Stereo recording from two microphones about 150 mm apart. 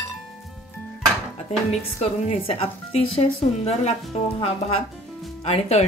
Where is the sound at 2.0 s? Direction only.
40° left (ahead or behind).